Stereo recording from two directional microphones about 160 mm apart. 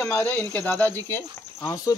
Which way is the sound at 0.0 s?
10° left (ahead or behind).